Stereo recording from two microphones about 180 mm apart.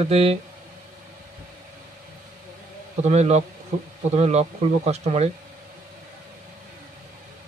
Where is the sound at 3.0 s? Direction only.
40° right (ahead or behind).